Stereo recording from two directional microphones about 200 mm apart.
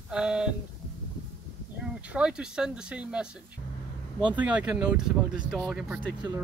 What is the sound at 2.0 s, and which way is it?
Speech, 5° right (ahead or behind).